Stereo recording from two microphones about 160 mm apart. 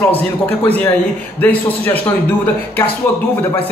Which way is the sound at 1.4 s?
10° left (ahead or behind).